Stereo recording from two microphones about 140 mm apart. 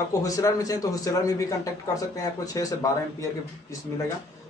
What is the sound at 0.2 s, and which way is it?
A man's voice, 25° left (ahead or behind).